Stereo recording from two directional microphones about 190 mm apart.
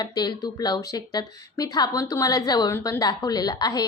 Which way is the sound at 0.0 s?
20° left (ahead or behind).